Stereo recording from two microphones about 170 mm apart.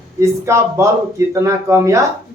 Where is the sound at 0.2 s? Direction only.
15° right (ahead or behind).